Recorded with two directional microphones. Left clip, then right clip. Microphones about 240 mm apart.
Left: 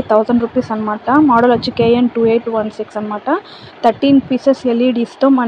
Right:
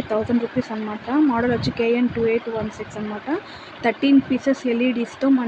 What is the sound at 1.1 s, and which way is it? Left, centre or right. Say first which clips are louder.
Speech: left 10 dB; centre.